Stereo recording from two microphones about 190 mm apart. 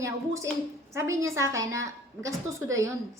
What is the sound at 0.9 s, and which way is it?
A woman's voice, 15° right (ahead or behind).